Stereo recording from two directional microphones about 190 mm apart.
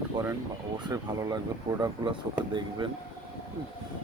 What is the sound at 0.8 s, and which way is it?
Speech, 20° right (ahead or behind).